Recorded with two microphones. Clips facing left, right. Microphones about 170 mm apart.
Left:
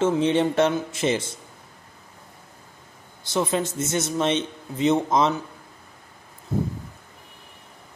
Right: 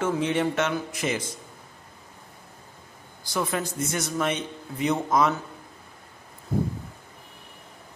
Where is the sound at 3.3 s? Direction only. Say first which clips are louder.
Left 4 dB; 25° left (ahead or behind).